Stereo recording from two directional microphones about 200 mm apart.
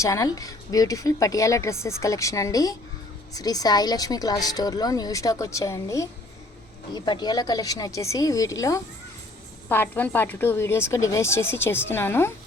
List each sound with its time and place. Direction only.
0.0 s a woman's voice: 15° left (ahead or behind)